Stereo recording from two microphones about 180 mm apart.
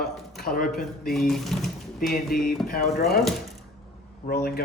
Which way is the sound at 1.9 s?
55° left (ahead or behind).